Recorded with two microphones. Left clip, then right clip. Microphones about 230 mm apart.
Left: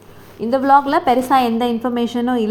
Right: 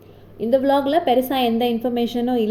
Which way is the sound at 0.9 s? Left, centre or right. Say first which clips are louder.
Left 2 dB; left.